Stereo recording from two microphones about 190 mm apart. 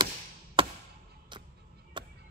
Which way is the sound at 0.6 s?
25° right (ahead or behind).